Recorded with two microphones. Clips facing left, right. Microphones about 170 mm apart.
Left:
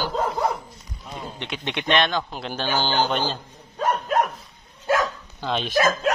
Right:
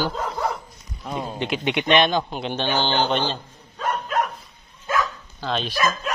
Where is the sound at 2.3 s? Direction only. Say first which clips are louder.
Right 2 dB; 5° left (ahead or behind).